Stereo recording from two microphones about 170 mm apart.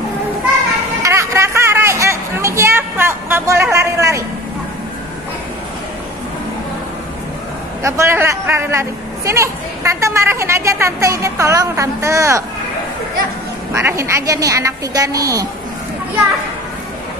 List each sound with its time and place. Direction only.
1.0 s a sound: 15° right (ahead or behind)
3.7 s a man's voice: 15° right (ahead or behind)
7.8 s a man's voice: 15° right (ahead or behind)
13.7 s a woman's voice: 15° right (ahead or behind)